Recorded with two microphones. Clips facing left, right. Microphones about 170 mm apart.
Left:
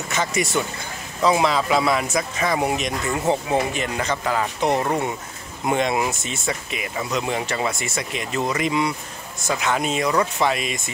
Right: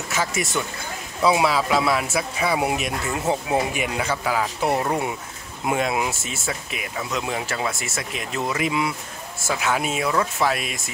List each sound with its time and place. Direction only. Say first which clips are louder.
0.1 s speech: left 2 dB; 5° right (ahead or behind)